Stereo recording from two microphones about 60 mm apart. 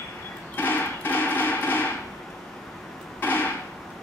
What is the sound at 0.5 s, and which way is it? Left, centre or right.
Hammer, left.